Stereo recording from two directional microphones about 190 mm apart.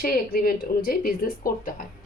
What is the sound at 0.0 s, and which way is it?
A woman's voice, 50° left (ahead or behind).